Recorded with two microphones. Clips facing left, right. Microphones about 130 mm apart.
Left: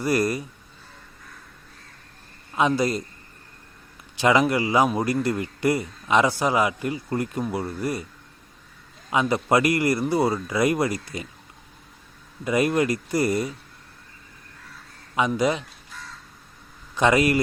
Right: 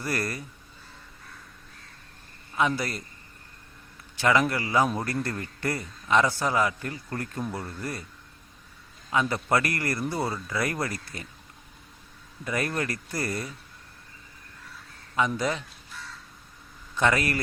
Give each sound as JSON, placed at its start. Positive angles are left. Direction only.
{"t": 0.0, "sound": "a man's voice", "side_deg": 15}
{"t": 2.6, "sound": "a man's voice", "side_deg": 20}
{"t": 4.2, "sound": "a man's voice", "side_deg": 15}
{"t": 9.0, "sound": "a man's voice", "side_deg": 15}
{"t": 12.5, "sound": "a man's voice", "side_deg": 15}
{"t": 15.3, "sound": "a man's voice", "side_deg": 15}
{"t": 16.9, "sound": "a man's voice", "side_deg": 20}